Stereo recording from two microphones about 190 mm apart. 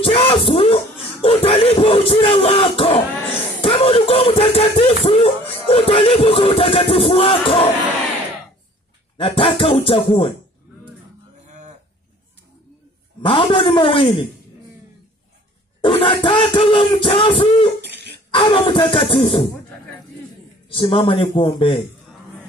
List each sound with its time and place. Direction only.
0.0 s music: 30° left (ahead or behind)
3.6 s speech: 30° left (ahead or behind)
5.0 s music: 30° left (ahead or behind)
9.1 s music: 25° left (ahead or behind)
11.4 s livestock: 40° right (ahead or behind)
13.2 s music: 25° left (ahead or behind)
15.8 s music: 30° left (ahead or behind)
17.8 s cough: 60° right (ahead or behind)
18.3 s music: 30° left (ahead or behind)
20.7 s music: 30° left (ahead or behind)